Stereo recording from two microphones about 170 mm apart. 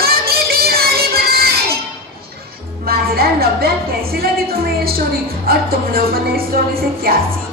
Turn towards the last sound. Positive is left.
turn(degrees=-60)  # may be behind; listen again after turning